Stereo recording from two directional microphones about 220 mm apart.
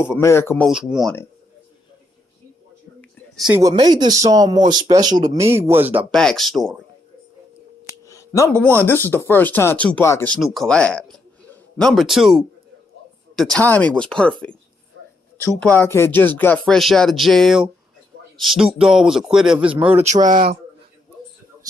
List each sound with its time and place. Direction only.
0.0 s a man's voice: 10° left (ahead or behind)
0.7 s speech: centre (ahead or behind)
3.4 s speech: 15° right (ahead or behind)
6.1 s speech: centre (ahead or behind)
8.1 s a man's voice: 15° left (ahead or behind)
15.6 s speech: 10° left (ahead or behind)
20.1 s speech: 35° right (ahead or behind)